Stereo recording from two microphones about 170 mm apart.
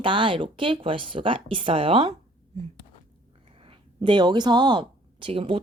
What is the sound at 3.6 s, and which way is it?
Speech, 30° right (ahead or behind).